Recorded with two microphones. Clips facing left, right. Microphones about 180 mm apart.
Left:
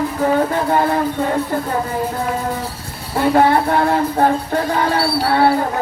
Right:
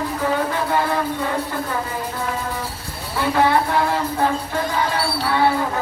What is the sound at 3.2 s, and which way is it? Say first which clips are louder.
Music: left 4 dB; 50° left (ahead or behind).